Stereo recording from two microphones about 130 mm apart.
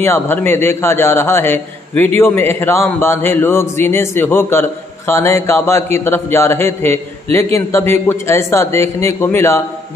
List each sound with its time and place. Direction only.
0.0 s a man's voice: 15° left (ahead or behind)